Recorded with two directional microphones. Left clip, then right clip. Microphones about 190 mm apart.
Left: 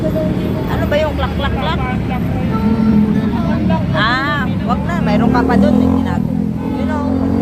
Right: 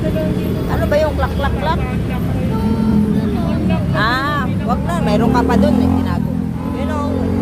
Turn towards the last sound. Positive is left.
turn(degrees=-40)  # may be behind; listen again after turning